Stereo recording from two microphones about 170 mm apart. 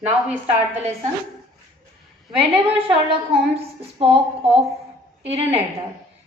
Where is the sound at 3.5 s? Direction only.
35° right (ahead or behind).